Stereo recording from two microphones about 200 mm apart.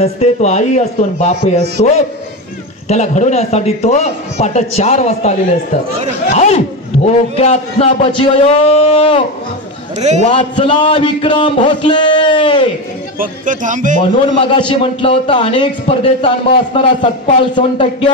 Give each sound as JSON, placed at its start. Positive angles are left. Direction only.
{"t": 0.0, "sound": "a man's voice", "side_deg": 35}
{"t": 9.9, "sound": "a man's voice", "side_deg": -35}
{"t": 10.2, "sound": "a man's voice", "side_deg": 25}
{"t": 13.2, "sound": "a man's voice", "side_deg": -40}
{"t": 14.5, "sound": "a man's voice", "side_deg": 25}